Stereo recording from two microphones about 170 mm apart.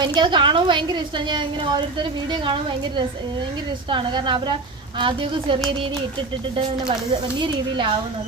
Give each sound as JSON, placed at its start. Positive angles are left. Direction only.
{"t": 0.0, "sound": "a woman's voice", "side_deg": -25}
{"t": 6.6, "sound": "a woman's voice", "side_deg": -25}